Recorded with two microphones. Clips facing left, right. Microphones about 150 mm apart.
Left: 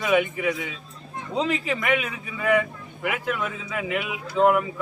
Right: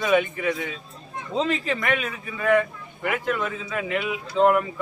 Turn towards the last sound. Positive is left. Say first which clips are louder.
# even
turn(degrees=5)  # may be behind; listen again after turning